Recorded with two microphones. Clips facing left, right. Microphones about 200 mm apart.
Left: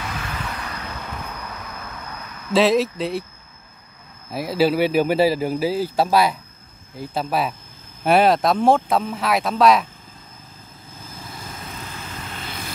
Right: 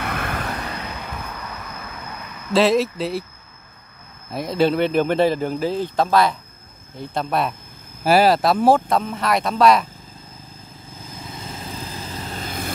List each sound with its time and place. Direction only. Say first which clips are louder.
0.0 s vehicle: right 4 dB; 60° right (ahead or behind)
2.5 s speech: even; centre (ahead or behind)
4.3 s speech: even; 5° left (ahead or behind)
11.3 s vehicle: right 4 dB; 30° right (ahead or behind); by 12.7 s 45° right (ahead or behind)